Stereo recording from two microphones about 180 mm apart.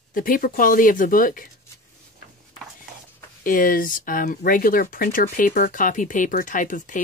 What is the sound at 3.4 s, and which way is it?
Speech, 50° left (ahead or behind).